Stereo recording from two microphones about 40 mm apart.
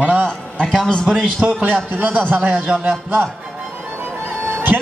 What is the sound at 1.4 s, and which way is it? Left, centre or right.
A man's voice, right.